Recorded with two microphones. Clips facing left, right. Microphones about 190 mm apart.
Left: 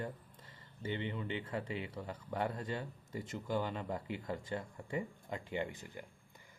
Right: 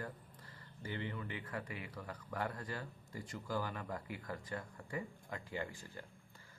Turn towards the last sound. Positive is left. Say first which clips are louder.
# left 4 dB
turn(degrees=20)  # may be behind; listen again after turning